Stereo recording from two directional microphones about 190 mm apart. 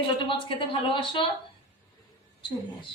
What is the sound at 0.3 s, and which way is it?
Speech, 25° left (ahead or behind).